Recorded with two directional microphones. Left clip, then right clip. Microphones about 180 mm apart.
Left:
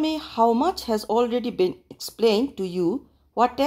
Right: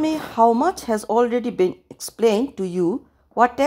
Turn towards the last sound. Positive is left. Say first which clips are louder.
# right 4 dB
turn(degrees=-15)  # may be behind; listen again after turning